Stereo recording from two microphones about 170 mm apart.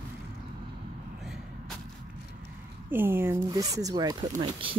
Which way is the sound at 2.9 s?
15° right (ahead or behind).